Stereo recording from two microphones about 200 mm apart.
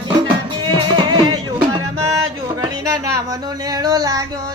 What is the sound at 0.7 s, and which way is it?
Music, 20° right (ahead or behind).